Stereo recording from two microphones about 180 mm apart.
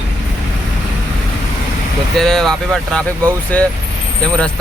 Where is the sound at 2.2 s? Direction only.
Centre (ahead or behind).